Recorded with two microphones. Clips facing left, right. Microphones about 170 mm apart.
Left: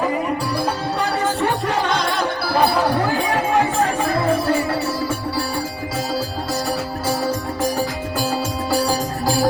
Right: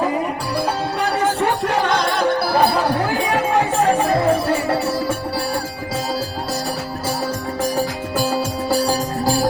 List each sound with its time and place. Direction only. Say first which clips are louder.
1.2 s music: right 3 dB; 15° right (ahead or behind)
1.6 s music: right 2 dB; 60° right (ahead or behind)
3.8 s music: right 3 dB; 30° right (ahead or behind)
8.7 s music: right 1 dB; 35° right (ahead or behind)